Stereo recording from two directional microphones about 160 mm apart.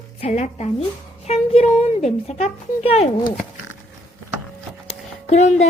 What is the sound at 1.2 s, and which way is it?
A woman's voice, 40° left (ahead or behind).